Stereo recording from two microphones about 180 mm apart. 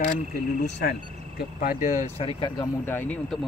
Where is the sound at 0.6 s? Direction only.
60° left (ahead or behind); by 2.1 s 45° left (ahead or behind).